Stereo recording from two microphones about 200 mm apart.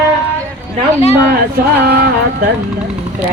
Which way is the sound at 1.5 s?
50° right (ahead or behind).